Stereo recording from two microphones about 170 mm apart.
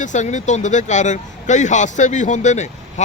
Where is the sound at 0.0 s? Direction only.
45° left (ahead or behind).